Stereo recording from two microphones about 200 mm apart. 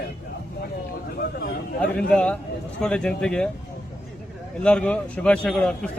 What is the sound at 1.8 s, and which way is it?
A man's voice, 5° left (ahead or behind).